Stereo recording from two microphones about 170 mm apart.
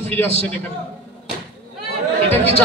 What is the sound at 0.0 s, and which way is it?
Speech, 10° left (ahead or behind).